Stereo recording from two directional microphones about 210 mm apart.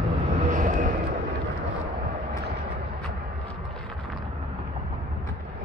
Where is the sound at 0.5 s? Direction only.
35° right (ahead or behind).